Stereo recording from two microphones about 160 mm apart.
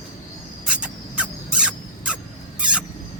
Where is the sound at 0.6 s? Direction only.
5° right (ahead or behind).